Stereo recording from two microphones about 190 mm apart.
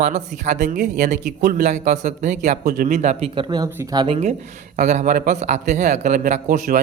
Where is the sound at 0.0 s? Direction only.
40° right (ahead or behind).